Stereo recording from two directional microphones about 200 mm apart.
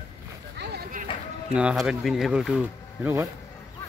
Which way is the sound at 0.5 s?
55° right (ahead or behind).